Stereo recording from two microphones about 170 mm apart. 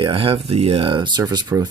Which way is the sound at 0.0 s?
30° right (ahead or behind).